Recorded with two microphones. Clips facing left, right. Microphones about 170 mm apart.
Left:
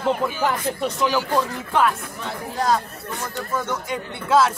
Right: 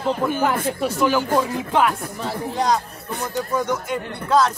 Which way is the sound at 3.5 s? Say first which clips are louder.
Right 2 dB; 10° right (ahead or behind).